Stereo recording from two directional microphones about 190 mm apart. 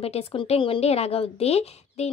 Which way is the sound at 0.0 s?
30° left (ahead or behind).